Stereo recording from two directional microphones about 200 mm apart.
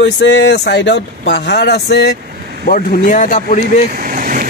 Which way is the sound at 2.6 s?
40° left (ahead or behind).